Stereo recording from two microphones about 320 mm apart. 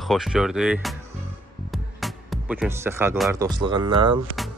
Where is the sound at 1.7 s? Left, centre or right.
Centre.